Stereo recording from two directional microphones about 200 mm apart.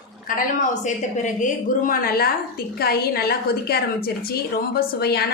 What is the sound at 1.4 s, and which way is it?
A woman's voice, 45° left (ahead or behind).